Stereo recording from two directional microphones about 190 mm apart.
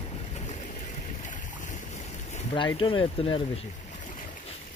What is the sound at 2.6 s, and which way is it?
Speech, 25° left (ahead or behind).